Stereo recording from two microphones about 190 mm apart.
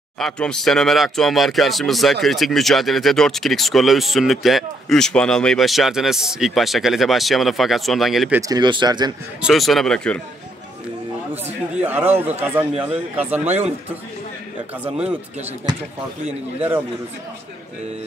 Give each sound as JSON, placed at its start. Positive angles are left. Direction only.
{"t": 0.2, "sound": "speech", "side_deg": 5}
{"t": 8.4, "sound": "speech", "side_deg": -20}
{"t": 9.4, "sound": "speech", "side_deg": 0}
{"t": 11.7, "sound": "speech", "side_deg": -10}
{"t": 16.3, "sound": "speech", "side_deg": -10}